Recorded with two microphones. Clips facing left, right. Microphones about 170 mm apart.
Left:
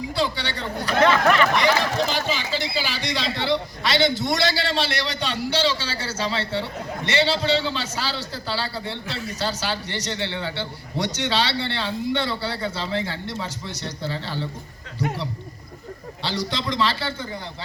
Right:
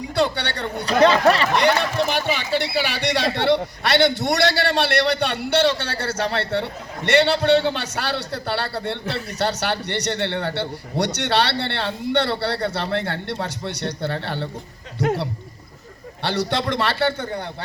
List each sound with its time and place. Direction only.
0.2 s a man's voice: 65° right (ahead or behind)
0.9 s speech: 35° right (ahead or behind)
1.5 s a man's voice: 60° right (ahead or behind)